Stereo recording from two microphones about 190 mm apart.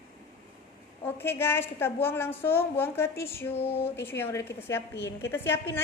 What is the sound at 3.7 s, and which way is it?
A woman's voice, 10° left (ahead or behind).